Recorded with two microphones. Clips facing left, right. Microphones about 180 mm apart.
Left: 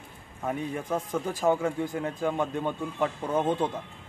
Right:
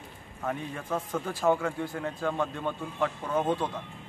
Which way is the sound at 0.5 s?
15° left (ahead or behind).